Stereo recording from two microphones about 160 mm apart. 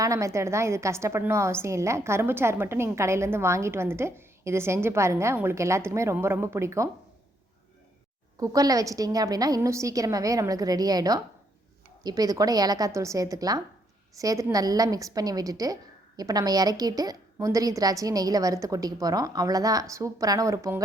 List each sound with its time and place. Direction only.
0.0 s a woman's voice: 20° right (ahead or behind)
8.4 s a woman's voice: 20° right (ahead or behind)